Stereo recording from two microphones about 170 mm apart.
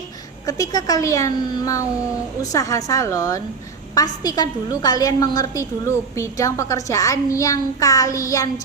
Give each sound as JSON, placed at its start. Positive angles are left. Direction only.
{"t": 0.4, "sound": "a woman's voice", "side_deg": 20}